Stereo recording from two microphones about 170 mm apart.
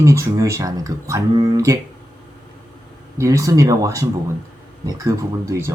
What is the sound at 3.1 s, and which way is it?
Speech, 20° right (ahead or behind).